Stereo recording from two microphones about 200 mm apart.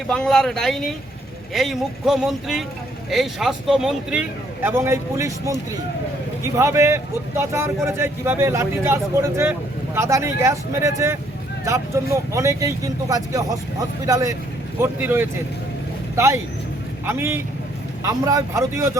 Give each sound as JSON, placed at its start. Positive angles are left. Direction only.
{"t": 0.1, "sound": "a man's voice", "side_deg": 5}